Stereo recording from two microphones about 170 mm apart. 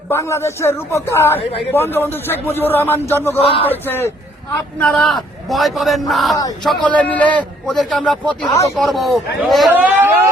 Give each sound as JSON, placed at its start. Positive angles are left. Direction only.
{"t": 0.1, "sound": "a man's voice", "side_deg": 15}
{"t": 3.3, "sound": "speech", "side_deg": 35}
{"t": 3.7, "sound": "a man's voice", "side_deg": 15}
{"t": 9.7, "sound": "speech", "side_deg": -10}